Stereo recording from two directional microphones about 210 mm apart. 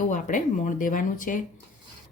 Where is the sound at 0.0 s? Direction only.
40° left (ahead or behind).